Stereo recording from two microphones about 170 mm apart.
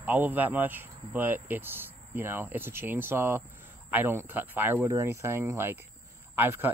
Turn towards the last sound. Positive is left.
turn(degrees=-10)  # may be behind; listen again after turning